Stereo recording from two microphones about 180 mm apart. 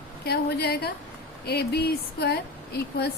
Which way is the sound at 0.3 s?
65° left (ahead or behind).